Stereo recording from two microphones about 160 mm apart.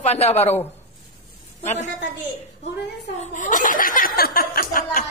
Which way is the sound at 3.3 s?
50° left (ahead or behind).